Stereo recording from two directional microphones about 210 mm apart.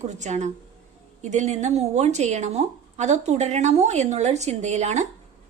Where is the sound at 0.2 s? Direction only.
35° right (ahead or behind).